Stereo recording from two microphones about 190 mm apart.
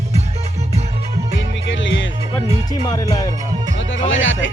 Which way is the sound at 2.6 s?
20° left (ahead or behind).